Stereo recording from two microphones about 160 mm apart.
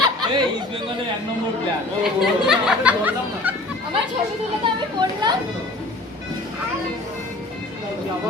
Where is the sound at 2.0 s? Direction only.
5° right (ahead or behind).